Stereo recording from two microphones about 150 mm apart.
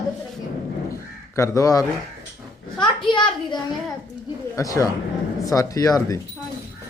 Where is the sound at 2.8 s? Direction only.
30° left (ahead or behind).